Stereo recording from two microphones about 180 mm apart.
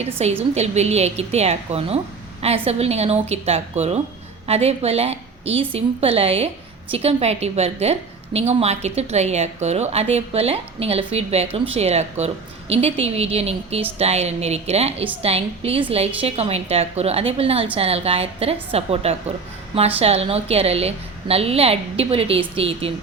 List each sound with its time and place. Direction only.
0.2 s a woman's voice: 35° right (ahead or behind)